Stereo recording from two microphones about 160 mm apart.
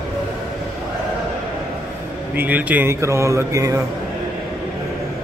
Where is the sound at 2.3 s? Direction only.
10° right (ahead or behind).